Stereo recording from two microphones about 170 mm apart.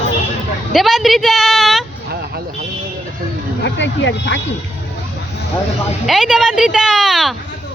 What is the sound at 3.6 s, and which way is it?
Speech, 90° left.